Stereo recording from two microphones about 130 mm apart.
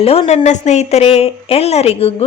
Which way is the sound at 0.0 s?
50° left (ahead or behind).